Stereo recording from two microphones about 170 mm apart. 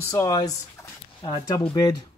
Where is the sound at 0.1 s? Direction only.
15° left (ahead or behind).